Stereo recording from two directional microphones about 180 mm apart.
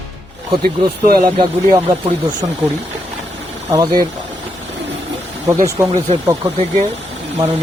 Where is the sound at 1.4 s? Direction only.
25° right (ahead or behind).